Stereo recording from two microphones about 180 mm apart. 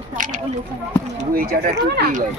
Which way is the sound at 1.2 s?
55° right (ahead or behind).